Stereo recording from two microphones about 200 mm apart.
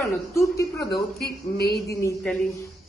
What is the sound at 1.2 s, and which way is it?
Speech, 55° left (ahead or behind).